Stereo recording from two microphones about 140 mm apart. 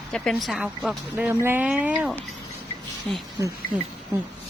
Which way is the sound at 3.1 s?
10° left (ahead or behind).